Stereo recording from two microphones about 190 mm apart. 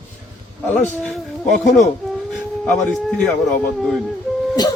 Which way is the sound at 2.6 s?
Centre (ahead or behind).